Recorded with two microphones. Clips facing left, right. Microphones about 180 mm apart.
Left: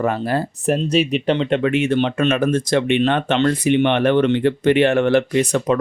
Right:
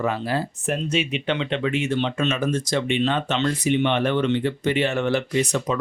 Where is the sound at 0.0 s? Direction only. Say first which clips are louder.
Left 4 dB; 50° left (ahead or behind).